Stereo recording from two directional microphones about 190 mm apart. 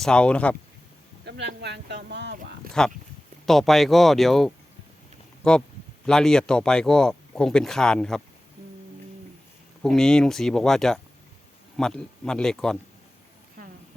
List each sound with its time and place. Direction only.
0.0 s speech: 5° left (ahead or behind)
1.2 s speech: 65° right (ahead or behind)
2.8 s speech: 5° left (ahead or behind)
9.8 s speech: 5° left (ahead or behind)